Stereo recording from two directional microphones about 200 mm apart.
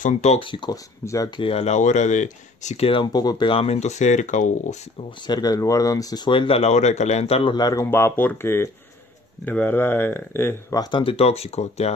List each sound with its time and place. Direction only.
0.0 s speech: 35° left (ahead or behind)
5.2 s speech: 20° left (ahead or behind)